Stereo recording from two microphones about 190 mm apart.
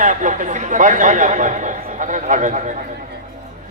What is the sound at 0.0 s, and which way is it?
A man's voice, 40° right (ahead or behind).